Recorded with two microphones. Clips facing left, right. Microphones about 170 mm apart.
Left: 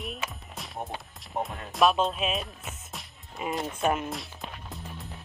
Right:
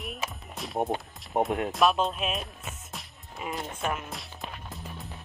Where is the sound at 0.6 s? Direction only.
Centre (ahead or behind).